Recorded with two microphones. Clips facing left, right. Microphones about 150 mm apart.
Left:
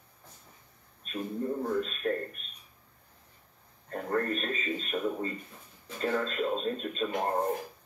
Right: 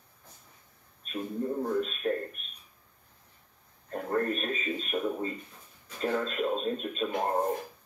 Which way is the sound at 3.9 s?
10° right (ahead or behind).